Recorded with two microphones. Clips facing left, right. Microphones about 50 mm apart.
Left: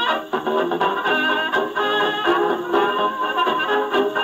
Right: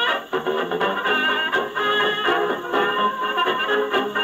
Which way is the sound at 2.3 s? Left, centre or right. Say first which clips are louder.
Left 3 dB; centre.